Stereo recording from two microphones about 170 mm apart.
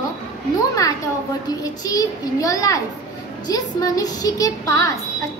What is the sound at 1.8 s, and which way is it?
A woman's voice, 20° left (ahead or behind).